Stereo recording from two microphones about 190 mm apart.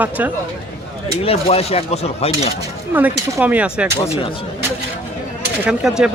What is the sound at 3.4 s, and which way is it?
Speech, 5° right (ahead or behind).